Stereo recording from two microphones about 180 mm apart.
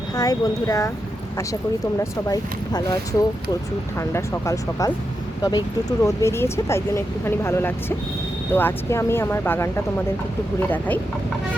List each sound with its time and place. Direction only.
0.2 s speech: 20° left (ahead or behind)
2.0 s speech: 20° left (ahead or behind)